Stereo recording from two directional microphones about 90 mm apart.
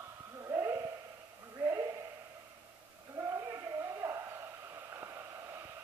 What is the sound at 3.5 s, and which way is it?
Music, 30° right (ahead or behind).